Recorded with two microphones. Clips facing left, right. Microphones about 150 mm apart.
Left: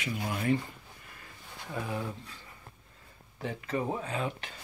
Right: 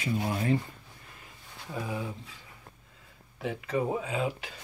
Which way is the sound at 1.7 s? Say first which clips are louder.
Right 1 dB; 10° right (ahead or behind).